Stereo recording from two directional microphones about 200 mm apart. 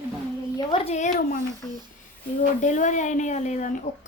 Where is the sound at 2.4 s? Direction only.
40° left (ahead or behind).